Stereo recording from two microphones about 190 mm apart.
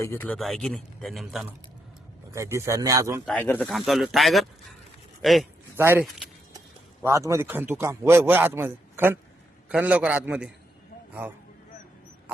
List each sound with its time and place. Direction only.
0.0 s speech: 10° left (ahead or behind)
0.3 s speech: centre (ahead or behind)
2.3 s a man's voice: 15° right (ahead or behind)
3.2 s speech: 10° left (ahead or behind)
5.7 s a man's voice: 10° right (ahead or behind)